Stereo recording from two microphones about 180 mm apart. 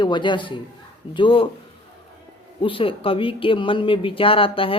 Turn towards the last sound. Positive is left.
turn(degrees=30)  # may be behind; listen again after turning